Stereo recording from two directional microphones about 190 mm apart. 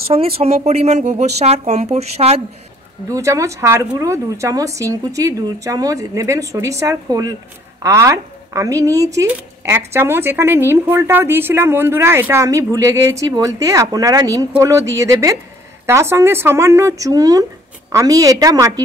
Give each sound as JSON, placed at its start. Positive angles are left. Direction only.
{"t": 0.1, "sound": "speech", "side_deg": -30}
{"t": 3.1, "sound": "a woman's voice", "side_deg": -15}